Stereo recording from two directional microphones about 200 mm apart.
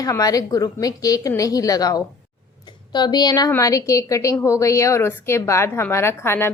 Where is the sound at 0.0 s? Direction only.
15° left (ahead or behind).